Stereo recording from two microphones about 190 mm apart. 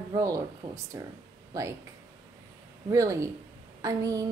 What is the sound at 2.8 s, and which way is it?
Speech, 15° right (ahead or behind).